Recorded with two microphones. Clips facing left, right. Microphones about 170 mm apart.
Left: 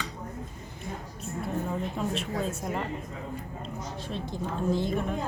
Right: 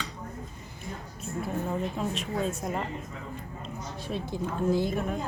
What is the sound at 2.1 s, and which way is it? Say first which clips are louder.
Speech: even; centre (ahead or behind).